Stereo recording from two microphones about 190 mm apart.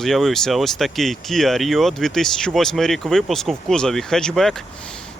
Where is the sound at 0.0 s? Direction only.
Centre (ahead or behind).